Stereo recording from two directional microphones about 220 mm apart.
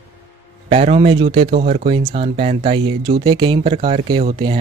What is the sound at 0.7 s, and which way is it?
Speech, 30° right (ahead or behind).